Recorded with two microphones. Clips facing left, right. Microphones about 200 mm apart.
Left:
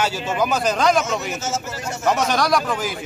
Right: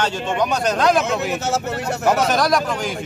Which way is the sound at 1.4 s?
60° right (ahead or behind).